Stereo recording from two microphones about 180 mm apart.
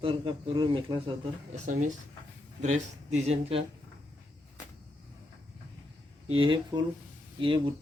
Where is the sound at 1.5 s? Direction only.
40° right (ahead or behind).